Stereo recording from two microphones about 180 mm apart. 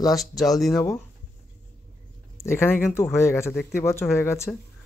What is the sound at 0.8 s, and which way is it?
Speech, 15° left (ahead or behind).